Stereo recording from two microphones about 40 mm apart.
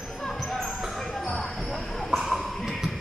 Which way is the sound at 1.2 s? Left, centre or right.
Centre.